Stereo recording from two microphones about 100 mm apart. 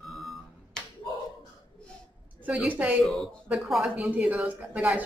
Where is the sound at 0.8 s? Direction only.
5° left (ahead or behind).